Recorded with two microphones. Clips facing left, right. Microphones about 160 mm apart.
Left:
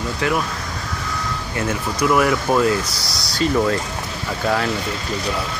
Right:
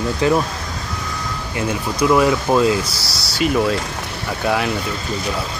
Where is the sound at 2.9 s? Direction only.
5° right (ahead or behind).